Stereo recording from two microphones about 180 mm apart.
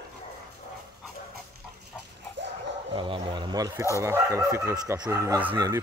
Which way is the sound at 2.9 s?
25° right (ahead or behind).